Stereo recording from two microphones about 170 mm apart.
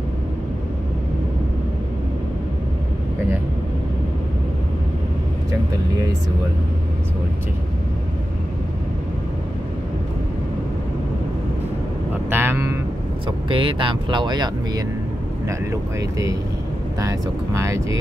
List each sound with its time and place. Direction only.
12.3 s vehicle: 15° right (ahead or behind)
13.5 s speech: 30° right (ahead or behind)
16.0 s speech: 20° right (ahead or behind)